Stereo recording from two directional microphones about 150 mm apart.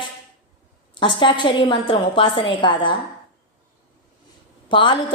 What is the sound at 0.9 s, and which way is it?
A woman's voice, 30° left (ahead or behind).